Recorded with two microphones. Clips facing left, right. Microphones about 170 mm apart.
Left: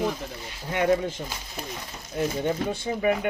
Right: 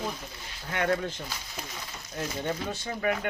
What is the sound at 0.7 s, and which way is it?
Speech, 20° left (ahead or behind).